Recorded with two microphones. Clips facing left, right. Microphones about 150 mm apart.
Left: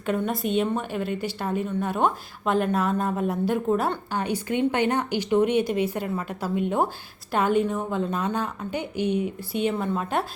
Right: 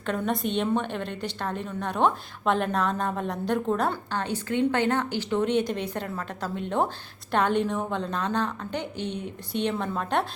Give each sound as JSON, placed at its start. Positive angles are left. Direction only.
{"t": 0.3, "sound": "a woman's voice", "side_deg": 5}